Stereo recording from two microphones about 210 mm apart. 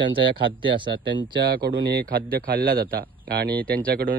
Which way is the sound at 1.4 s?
50° right (ahead or behind).